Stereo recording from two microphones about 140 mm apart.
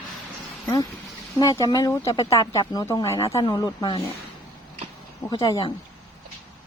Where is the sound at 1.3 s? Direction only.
25° left (ahead or behind).